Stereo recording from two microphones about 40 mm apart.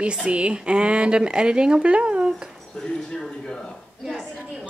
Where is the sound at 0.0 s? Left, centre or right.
Right.